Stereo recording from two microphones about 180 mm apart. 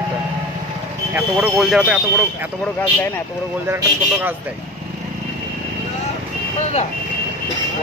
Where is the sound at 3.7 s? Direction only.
10° right (ahead or behind).